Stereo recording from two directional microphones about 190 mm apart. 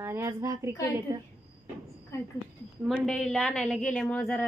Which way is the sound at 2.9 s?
Centre (ahead or behind).